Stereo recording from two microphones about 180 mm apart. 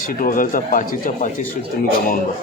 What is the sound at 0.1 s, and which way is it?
Speech, 50° left (ahead or behind).